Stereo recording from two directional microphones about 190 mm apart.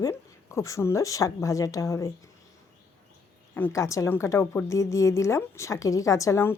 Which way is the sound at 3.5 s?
15° left (ahead or behind).